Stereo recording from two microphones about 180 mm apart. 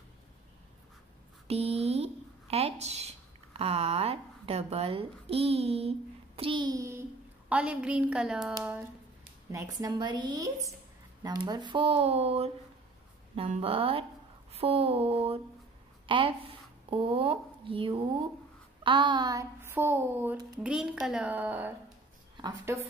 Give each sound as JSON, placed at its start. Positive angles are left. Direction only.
{"t": 1.5, "sound": "a woman's voice", "side_deg": -35}
{"t": 9.5, "sound": "speech", "side_deg": -20}
{"t": 13.4, "sound": "a sound", "side_deg": -30}
{"t": 16.1, "sound": "a woman's voice", "side_deg": -30}